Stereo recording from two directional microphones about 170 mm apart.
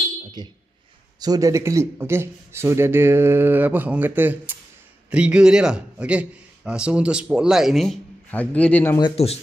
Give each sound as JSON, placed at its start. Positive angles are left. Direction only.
{"t": 0.4, "sound": "a man's voice", "side_deg": -25}
{"t": 9.1, "sound": "speech", "side_deg": 35}